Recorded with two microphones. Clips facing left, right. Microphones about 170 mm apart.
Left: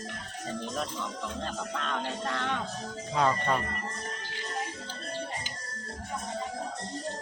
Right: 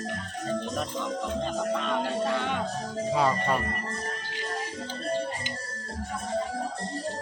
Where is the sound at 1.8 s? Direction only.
5° right (ahead or behind).